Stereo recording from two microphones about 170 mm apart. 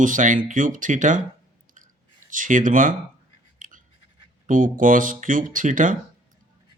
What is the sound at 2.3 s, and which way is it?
Speech, 50° right (ahead or behind).